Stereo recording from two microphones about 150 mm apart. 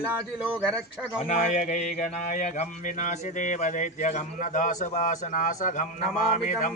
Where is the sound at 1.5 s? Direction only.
55° left (ahead or behind).